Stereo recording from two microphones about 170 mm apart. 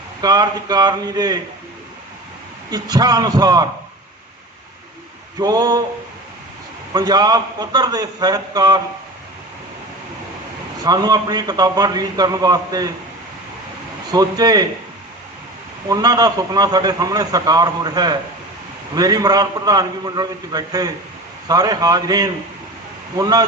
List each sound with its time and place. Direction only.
0.2 s a man's voice: 25° right (ahead or behind)
2.6 s a man's voice: 20° right (ahead or behind)
5.4 s a man's voice: 20° right (ahead or behind)
6.9 s a man's voice: 25° right (ahead or behind)
10.8 s a man's voice: 25° right (ahead or behind)
14.1 s a man's voice: 20° right (ahead or behind)
15.9 s a man's voice: 20° right (ahead or behind)